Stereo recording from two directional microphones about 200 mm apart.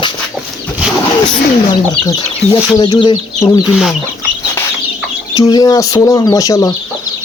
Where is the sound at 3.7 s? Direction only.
Centre (ahead or behind).